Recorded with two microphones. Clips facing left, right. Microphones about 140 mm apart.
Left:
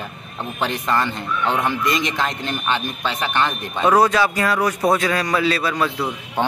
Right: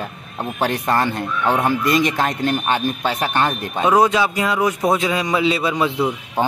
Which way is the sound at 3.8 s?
15° right (ahead or behind).